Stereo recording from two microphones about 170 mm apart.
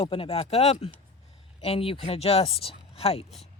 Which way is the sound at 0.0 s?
35° left (ahead or behind).